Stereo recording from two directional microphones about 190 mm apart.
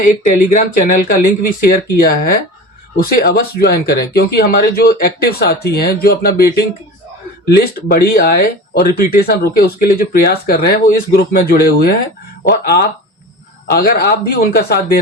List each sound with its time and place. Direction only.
0.0 s speech: 45° left (ahead or behind)